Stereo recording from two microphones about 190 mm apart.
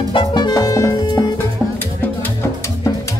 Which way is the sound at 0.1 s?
25° left (ahead or behind).